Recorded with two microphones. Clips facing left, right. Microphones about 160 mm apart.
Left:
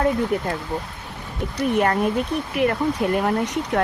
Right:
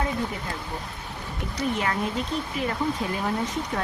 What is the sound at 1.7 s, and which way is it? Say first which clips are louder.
Speech: left 10 dB; 55° left (ahead or behind).